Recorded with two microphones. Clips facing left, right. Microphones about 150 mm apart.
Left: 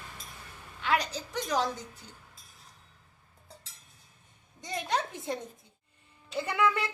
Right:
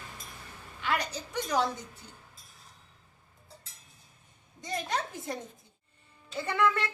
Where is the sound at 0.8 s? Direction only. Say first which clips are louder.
Left 2 dB; 5° right (ahead or behind).